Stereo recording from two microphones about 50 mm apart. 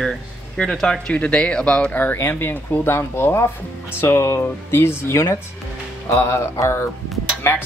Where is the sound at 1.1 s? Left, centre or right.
Left.